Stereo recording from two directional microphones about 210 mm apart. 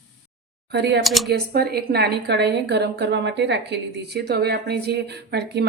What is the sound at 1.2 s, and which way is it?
A woman's voice, 50° right (ahead or behind).